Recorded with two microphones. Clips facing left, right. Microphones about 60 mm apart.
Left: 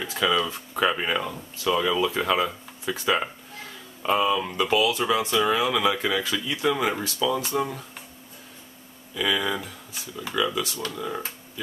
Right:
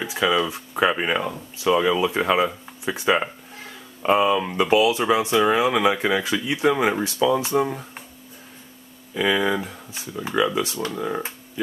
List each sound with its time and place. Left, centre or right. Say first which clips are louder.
0.0 s speech: right 3 dB; centre
9.1 s speech: right 5 dB; right